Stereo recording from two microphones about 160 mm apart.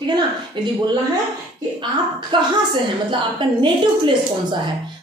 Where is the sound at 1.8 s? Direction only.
30° right (ahead or behind).